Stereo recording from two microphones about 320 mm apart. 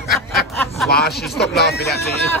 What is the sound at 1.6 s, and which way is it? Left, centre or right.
Speech, left.